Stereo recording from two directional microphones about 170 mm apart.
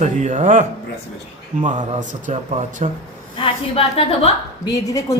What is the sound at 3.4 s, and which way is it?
Speech, 35° left (ahead or behind).